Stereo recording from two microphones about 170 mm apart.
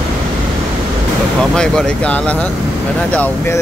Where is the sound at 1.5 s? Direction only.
5° left (ahead or behind).